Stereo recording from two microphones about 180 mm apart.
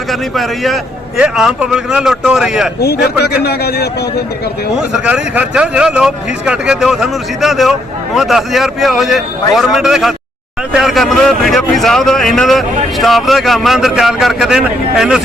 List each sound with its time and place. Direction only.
0.1 s speech: centre (ahead or behind)
2.8 s a man's voice: 60° left (ahead or behind)
5.0 s speech: 5° right (ahead or behind)